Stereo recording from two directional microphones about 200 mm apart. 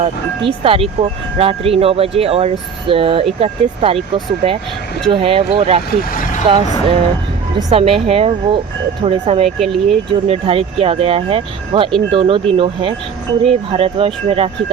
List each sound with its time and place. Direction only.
0.6 s speech: 30° right (ahead or behind)
5.0 s speech: 25° right (ahead or behind)
6.0 s speech: 45° left (ahead or behind)
6.5 s speech: 30° right (ahead or behind)
9.6 s speech: centre (ahead or behind)
10.1 s speech: 30° right (ahead or behind)